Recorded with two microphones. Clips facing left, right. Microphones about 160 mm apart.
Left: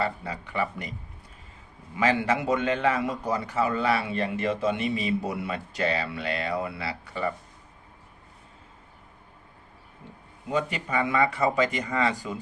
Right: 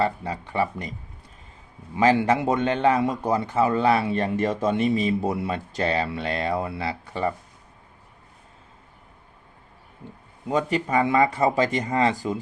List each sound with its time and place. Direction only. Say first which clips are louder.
0.0 s a man's voice: right 5 dB; 35° right (ahead or behind)
2.0 s a man's voice: right 5 dB; 30° right (ahead or behind)
10.5 s a man's voice: right 5 dB; 35° right (ahead or behind)